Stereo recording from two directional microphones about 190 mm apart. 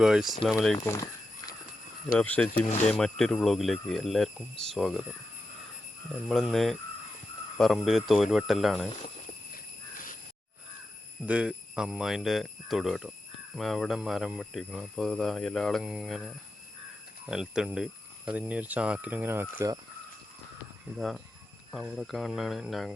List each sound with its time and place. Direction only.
0.0 s speech: 5° right (ahead or behind)
0.9 s a sound: 20° left (ahead or behind)
2.1 s speech: 10° left (ahead or behind)
6.2 s speech: centre (ahead or behind)
11.3 s speech: 5° right (ahead or behind)
21.7 s speech: centre (ahead or behind)